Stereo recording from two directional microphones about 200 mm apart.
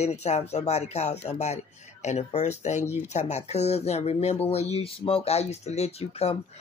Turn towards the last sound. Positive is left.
turn(degrees=30)  # may be behind; listen again after turning